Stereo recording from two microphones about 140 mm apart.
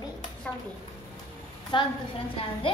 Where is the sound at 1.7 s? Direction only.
35° left (ahead or behind).